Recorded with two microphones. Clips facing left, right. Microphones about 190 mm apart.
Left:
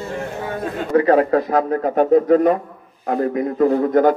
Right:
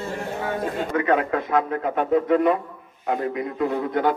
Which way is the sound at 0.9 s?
35° left (ahead or behind).